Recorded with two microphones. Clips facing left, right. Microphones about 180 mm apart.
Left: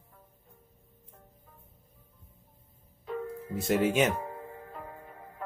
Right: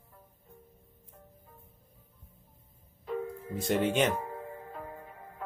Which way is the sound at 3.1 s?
5° left (ahead or behind).